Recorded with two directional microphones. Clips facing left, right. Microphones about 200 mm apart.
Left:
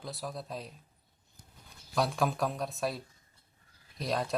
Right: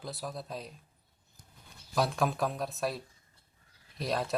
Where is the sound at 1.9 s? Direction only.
Centre (ahead or behind).